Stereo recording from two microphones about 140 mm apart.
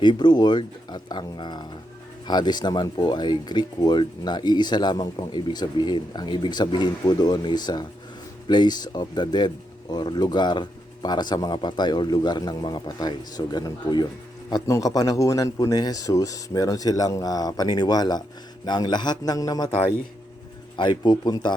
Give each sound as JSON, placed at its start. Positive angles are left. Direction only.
{"t": 0.0, "sound": "speech", "side_deg": 30}
{"t": 20.7, "sound": "speech", "side_deg": 35}